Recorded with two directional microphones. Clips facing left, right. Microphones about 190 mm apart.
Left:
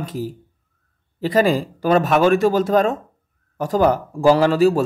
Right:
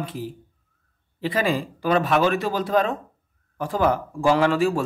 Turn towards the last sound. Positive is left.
turn(degrees=35)  # may be behind; listen again after turning